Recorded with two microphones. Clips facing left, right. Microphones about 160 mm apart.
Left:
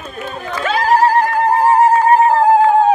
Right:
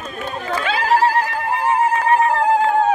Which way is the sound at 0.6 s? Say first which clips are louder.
Left 4 dB; 45° left (ahead or behind).